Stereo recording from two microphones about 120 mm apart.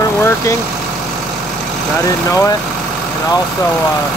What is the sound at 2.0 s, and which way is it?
Speech, 30° left (ahead or behind).